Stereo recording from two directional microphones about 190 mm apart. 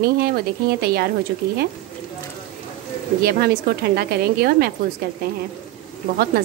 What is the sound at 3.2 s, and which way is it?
Speech, 55° right (ahead or behind).